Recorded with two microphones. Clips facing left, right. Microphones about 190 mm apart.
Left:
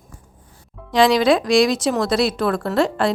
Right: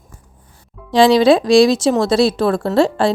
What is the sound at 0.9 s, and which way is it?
Speech, 30° right (ahead or behind).